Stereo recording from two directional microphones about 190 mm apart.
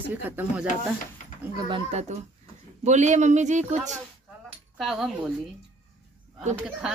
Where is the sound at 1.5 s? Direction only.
25° right (ahead or behind).